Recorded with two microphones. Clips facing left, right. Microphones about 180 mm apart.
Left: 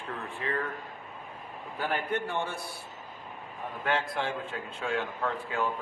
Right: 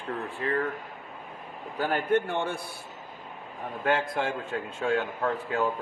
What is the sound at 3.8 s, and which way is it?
Speech, 45° right (ahead or behind).